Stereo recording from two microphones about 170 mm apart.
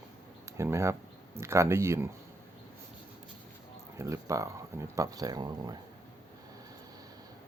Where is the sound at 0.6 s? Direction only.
15° right (ahead or behind).